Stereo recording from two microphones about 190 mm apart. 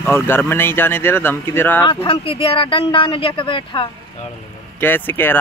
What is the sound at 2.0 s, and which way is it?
Speech, 30° left (ahead or behind).